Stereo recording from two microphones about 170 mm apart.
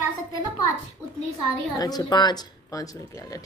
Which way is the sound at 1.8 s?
25° left (ahead or behind).